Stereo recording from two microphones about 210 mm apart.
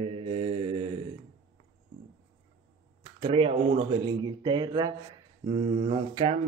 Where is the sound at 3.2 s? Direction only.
25° right (ahead or behind).